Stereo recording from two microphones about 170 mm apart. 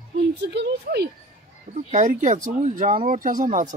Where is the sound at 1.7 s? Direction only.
50° right (ahead or behind).